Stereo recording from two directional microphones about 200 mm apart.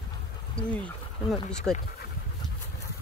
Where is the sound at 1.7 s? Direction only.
Centre (ahead or behind).